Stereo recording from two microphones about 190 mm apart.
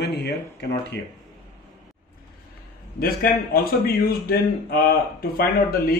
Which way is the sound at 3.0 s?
50° left (ahead or behind).